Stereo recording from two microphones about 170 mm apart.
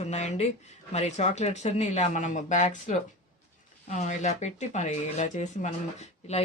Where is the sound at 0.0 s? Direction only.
40° left (ahead or behind).